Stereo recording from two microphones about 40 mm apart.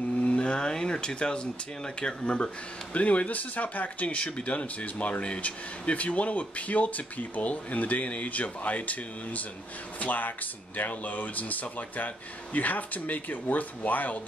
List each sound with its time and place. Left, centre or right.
0.2 s vehicle: left
2.0 s speech: left
4.2 s speech: left